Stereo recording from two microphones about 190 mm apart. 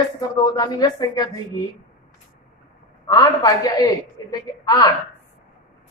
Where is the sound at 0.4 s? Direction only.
20° left (ahead or behind).